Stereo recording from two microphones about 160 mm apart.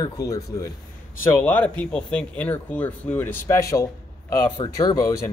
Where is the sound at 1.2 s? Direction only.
10° left (ahead or behind).